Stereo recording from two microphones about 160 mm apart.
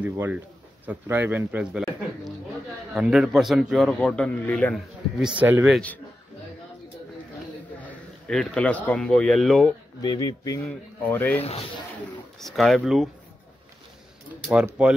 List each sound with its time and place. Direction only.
0.0 s speech: 10° right (ahead or behind)
2.9 s a man's voice: 5° right (ahead or behind)
5.4 s speech: 10° right (ahead or behind)
5.7 s a man's voice: 5° left (ahead or behind)
7.8 s a man's voice: 5° left (ahead or behind)
10.0 s a man's voice: 25° left (ahead or behind)
11.3 s speech: 40° left (ahead or behind)
12.4 s a man's voice: centre (ahead or behind)
14.5 s speech: 5° right (ahead or behind)